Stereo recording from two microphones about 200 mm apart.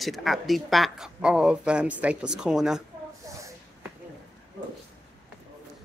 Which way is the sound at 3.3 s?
15° right (ahead or behind).